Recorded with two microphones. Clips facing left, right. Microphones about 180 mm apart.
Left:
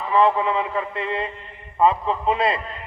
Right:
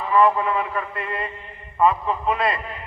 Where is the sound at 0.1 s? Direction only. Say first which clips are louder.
Even; 20° left (ahead or behind).